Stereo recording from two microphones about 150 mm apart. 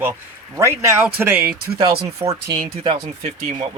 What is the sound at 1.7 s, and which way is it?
Speech, 35° right (ahead or behind).